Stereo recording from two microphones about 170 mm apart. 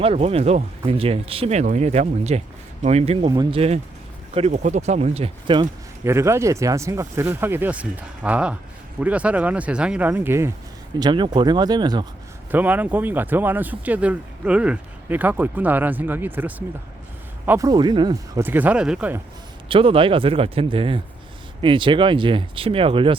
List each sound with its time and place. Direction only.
0.0 s speech: 35° right (ahead or behind)
6.1 s speech: 15° right (ahead or behind)
11.0 s speech: 25° right (ahead or behind)
12.5 s speech: 10° right (ahead or behind)
17.7 s speech: 25° right (ahead or behind); by 19.2 s 10° right (ahead or behind)
19.6 s speech: 30° right (ahead or behind)